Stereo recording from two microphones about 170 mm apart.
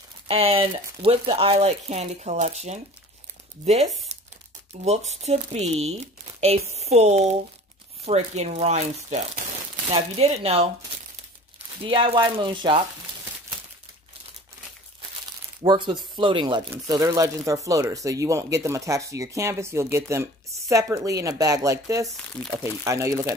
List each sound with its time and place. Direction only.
0.3 s speech: 35° right (ahead or behind)
15.6 s speech: 30° right (ahead or behind)
22.1 s speech: 5° left (ahead or behind)
22.6 s speech: 15° right (ahead or behind)